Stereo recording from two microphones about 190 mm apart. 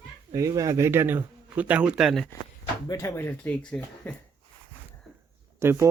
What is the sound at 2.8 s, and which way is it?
Speech, 15° left (ahead or behind).